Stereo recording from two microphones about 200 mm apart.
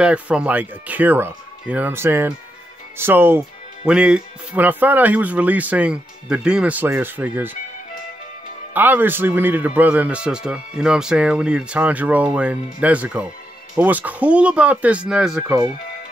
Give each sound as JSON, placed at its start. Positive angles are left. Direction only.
{"t": 0.0, "sound": "speech", "side_deg": -5}
{"t": 8.7, "sound": "speech", "side_deg": -10}
{"t": 15.4, "sound": "speech", "side_deg": -20}